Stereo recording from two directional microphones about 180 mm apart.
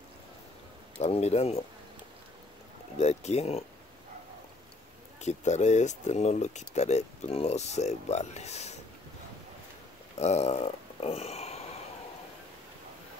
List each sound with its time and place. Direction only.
0.9 s speech: 35° left (ahead or behind)
3.0 s speech: 35° left (ahead or behind)
5.2 s speech: 40° left (ahead or behind)
10.1 s speech: 35° left (ahead or behind)